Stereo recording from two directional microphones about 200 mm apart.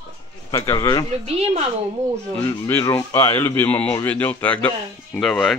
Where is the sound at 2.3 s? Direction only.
10° left (ahead or behind).